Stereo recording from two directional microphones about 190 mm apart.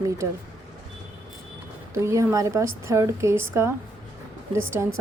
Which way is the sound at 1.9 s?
15° right (ahead or behind).